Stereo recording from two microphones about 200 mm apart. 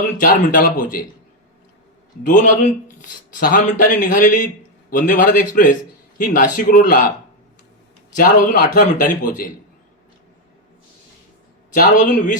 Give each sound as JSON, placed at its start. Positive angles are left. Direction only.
{"t": 0.2, "sound": "a man's voice", "side_deg": 45}
{"t": 2.2, "sound": "a man's voice", "side_deg": 40}
{"t": 8.1, "sound": "a man's voice", "side_deg": 45}
{"t": 11.7, "sound": "speech", "side_deg": 40}